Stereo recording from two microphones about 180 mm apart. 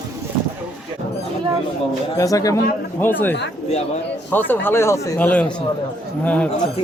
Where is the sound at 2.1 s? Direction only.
20° left (ahead or behind).